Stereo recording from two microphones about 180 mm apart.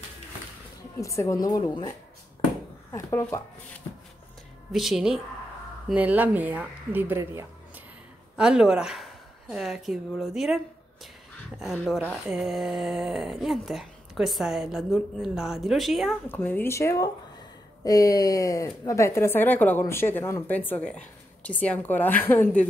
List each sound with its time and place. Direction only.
1.0 s a woman's voice: 15° left (ahead or behind)
4.7 s a woman's voice: centre (ahead or behind)
11.6 s speech: centre (ahead or behind)
16.3 s speech: 10° left (ahead or behind)